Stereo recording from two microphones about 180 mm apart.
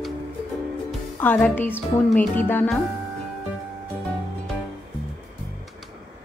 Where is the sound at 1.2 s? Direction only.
10° left (ahead or behind).